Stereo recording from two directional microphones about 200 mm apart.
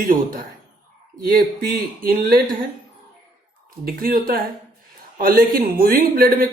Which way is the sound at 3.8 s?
45° right (ahead or behind).